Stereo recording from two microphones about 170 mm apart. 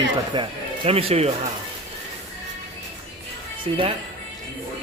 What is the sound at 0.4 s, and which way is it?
Speech, 30° right (ahead or behind).